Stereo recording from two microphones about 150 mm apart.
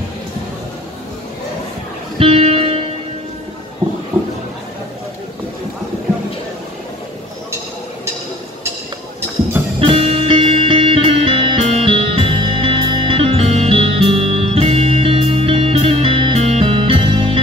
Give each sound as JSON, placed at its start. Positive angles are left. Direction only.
{"t": 2.1, "sound": "music", "side_deg": -35}
{"t": 9.8, "sound": "music", "side_deg": -40}